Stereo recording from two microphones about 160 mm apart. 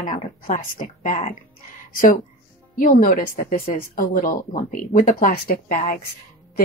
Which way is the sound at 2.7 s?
60° left (ahead or behind).